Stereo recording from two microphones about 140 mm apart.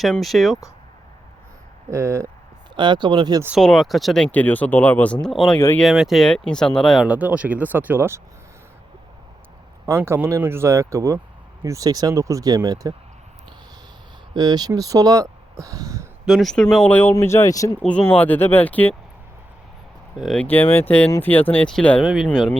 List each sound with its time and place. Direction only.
0.0 s speech: centre (ahead or behind)
1.9 s speech: 20° right (ahead or behind)
2.7 s speech: 35° right (ahead or behind)
3.6 s speech: 5° left (ahead or behind)
5.5 s speech: 15° left (ahead or behind)
5.8 s speech: 5° right (ahead or behind)
7.1 s speech: 10° right (ahead or behind)
9.8 s speech: 20° right (ahead or behind)
14.3 s speech: 30° right (ahead or behind)
16.2 s speech: centre (ahead or behind)
16.9 s speech: 15° left (ahead or behind)
17.8 s speech: 10° left (ahead or behind)
20.1 s speech: 5° left (ahead or behind)
22.0 s speech: 5° right (ahead or behind)